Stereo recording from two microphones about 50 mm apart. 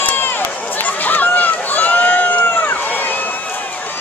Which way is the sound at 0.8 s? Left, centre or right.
Left.